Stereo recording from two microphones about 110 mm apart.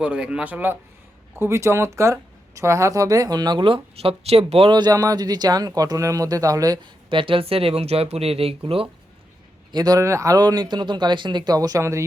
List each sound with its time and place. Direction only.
0.0 s speech: 10° right (ahead or behind); by 4.7 s 65° right (ahead or behind)
4.7 s speech: 35° right (ahead or behind)
7.1 s speech: 50° right (ahead or behind)
9.7 s speech: 35° right (ahead or behind)